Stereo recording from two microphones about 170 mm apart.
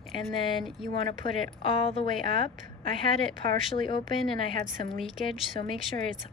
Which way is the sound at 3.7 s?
30° left (ahead or behind).